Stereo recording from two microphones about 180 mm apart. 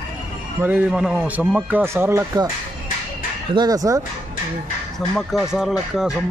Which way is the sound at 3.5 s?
20° right (ahead or behind).